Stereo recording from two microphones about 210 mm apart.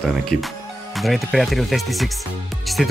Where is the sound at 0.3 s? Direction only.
45° left (ahead or behind).